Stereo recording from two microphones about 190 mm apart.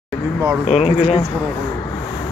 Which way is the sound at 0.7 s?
35° left (ahead or behind).